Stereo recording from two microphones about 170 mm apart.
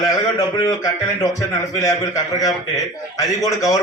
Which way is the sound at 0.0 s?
20° left (ahead or behind).